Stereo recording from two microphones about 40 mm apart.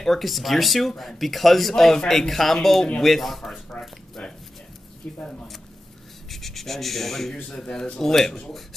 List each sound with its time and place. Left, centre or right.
0.0 s speech: centre
4.2 s speech: left
5.0 s speech: left
6.3 s speech: centre
7.4 s speech: centre